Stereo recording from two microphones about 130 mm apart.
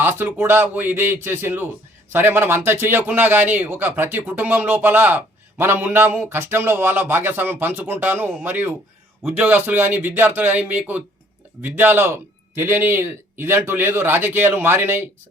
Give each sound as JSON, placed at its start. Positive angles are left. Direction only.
{"t": 0.0, "sound": "speech", "side_deg": -15}